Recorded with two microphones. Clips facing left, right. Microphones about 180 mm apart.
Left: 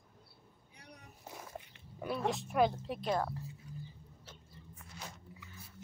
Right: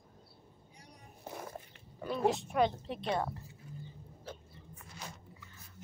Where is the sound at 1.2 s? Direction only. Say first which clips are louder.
Right 4 dB; 55° right (ahead or behind).